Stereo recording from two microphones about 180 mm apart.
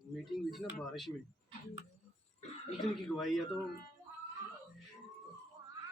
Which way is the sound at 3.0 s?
Centre (ahead or behind).